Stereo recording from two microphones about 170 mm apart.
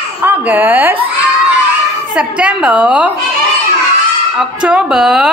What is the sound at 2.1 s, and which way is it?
Speech, 5° right (ahead or behind).